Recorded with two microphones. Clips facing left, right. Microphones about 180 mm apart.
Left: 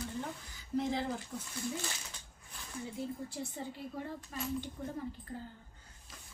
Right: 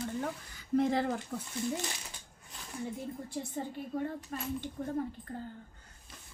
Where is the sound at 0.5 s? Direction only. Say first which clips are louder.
Right 5 dB; 55° right (ahead or behind).